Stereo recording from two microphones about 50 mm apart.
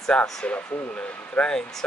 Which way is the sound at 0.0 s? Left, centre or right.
Centre.